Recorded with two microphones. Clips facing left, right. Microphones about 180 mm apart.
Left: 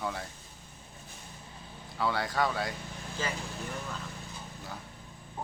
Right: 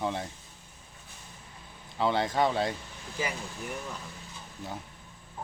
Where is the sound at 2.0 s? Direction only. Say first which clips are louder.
Right 4 dB; 20° right (ahead or behind).